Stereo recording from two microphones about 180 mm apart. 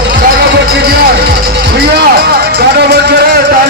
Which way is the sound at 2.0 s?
60° right (ahead or behind).